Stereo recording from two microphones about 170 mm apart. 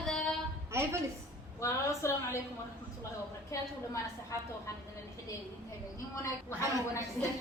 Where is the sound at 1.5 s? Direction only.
15° left (ahead or behind).